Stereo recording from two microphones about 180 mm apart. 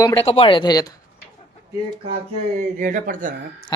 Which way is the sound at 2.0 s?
35° right (ahead or behind).